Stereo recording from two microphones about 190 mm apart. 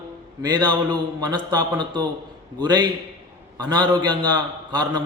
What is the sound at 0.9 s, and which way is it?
A man's voice, 20° right (ahead or behind).